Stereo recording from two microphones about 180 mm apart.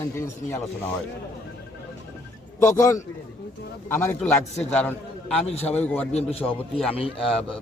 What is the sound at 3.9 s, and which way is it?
A man's voice, 10° left (ahead or behind).